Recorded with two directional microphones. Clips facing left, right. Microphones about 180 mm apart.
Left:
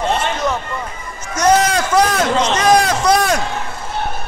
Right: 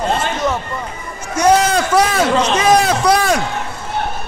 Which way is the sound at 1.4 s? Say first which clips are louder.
Right 1 dB; 5° right (ahead or behind).